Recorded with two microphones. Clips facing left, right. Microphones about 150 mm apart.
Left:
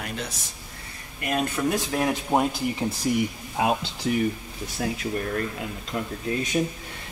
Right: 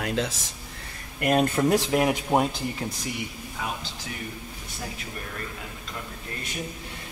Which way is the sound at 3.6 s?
65° left (ahead or behind).